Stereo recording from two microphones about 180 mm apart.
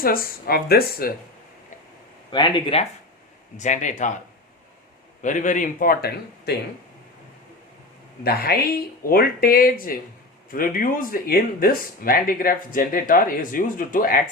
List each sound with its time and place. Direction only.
0.0 s speech: 55° left (ahead or behind)
2.3 s speech: 25° left (ahead or behind)
3.6 s speech: 45° left (ahead or behind)
5.2 s speech: 45° left (ahead or behind); by 6.6 s 60° left (ahead or behind)
8.2 s speech: 60° left (ahead or behind)